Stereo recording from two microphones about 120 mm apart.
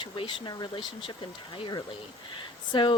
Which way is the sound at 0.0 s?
45° left (ahead or behind).